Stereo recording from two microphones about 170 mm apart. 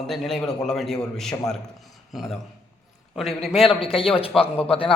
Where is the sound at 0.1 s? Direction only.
Centre (ahead or behind).